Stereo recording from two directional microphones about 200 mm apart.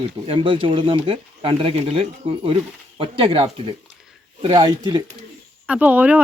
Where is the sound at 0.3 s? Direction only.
25° right (ahead or behind).